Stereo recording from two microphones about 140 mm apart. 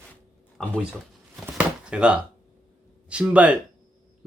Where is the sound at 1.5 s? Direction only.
5° right (ahead or behind).